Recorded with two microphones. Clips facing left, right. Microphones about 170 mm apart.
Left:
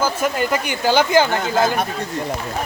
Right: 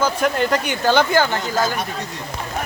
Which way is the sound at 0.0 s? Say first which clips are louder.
Right 1 dB; 5° left (ahead or behind).